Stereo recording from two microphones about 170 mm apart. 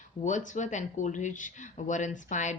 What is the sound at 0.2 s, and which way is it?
Speech, 45° left (ahead or behind).